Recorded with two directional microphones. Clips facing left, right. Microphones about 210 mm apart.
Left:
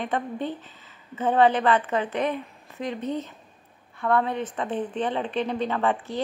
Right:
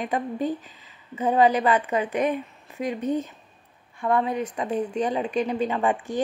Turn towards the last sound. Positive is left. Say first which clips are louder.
# right 1 dB
turn(degrees=-15)  # may be behind; listen again after turning